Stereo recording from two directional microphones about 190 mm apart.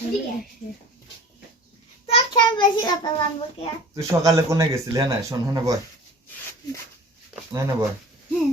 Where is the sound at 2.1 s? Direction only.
25° left (ahead or behind).